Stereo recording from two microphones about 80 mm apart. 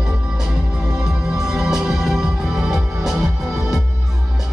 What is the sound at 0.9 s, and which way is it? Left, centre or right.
Music, centre.